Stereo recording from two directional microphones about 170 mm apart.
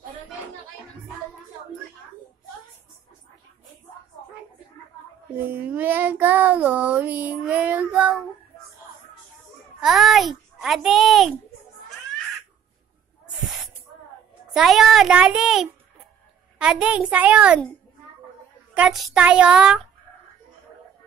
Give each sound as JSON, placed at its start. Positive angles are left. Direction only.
{"t": 5.4, "sound": "child singing", "side_deg": -10}
{"t": 9.8, "sound": "a child's voice", "side_deg": 0}
{"t": 14.5, "sound": "a child's voice", "side_deg": 0}
{"t": 16.5, "sound": "child singing", "side_deg": -5}
{"t": 18.8, "sound": "a child's voice", "side_deg": 0}